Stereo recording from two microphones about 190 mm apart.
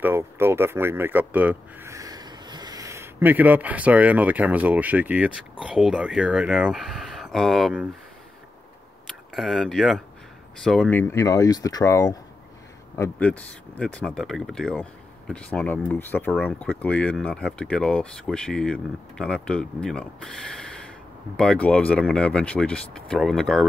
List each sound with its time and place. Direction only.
0.0 s speech: 10° right (ahead or behind)
9.0 s speech: centre (ahead or behind)